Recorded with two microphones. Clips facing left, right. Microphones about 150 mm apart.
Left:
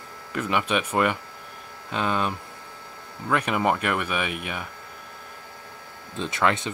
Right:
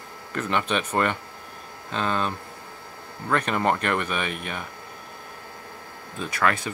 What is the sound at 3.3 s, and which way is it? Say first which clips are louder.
Speech: even; 10° left (ahead or behind).